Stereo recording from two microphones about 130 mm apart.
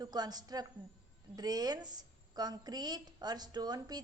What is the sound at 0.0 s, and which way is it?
A woman's voice, 30° right (ahead or behind).